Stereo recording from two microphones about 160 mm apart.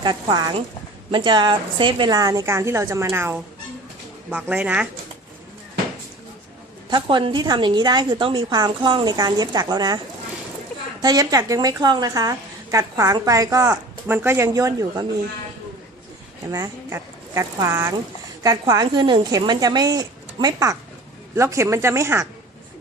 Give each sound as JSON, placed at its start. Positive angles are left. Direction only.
{"t": 0.0, "sound": "a woman's voice", "side_deg": -25}
{"t": 6.9, "sound": "a woman's voice", "side_deg": -30}
{"t": 11.0, "sound": "a woman's voice", "side_deg": -25}
{"t": 16.5, "sound": "a woman's voice", "side_deg": -20}